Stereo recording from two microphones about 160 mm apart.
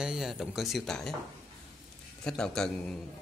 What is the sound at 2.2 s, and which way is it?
Speech, 5° left (ahead or behind).